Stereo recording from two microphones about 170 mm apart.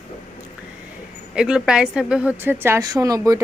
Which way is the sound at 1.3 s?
5° right (ahead or behind).